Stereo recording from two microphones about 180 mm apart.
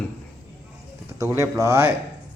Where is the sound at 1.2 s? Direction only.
20° right (ahead or behind).